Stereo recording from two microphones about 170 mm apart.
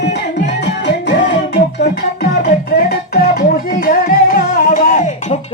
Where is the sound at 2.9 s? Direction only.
65° left (ahead or behind).